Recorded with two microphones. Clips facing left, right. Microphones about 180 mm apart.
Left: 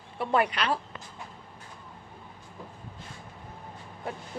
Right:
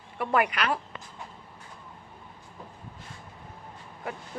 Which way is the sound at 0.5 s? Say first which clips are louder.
Even; 30° left (ahead or behind).